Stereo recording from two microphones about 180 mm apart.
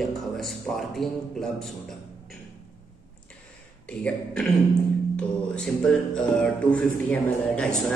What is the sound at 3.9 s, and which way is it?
Speech, 5° left (ahead or behind).